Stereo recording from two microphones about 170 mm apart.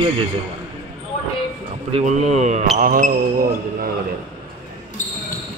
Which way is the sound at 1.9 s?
40° right (ahead or behind).